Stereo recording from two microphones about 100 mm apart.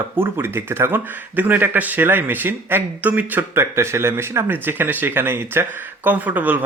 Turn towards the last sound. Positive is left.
turn(degrees=-15)  # may be behind; listen again after turning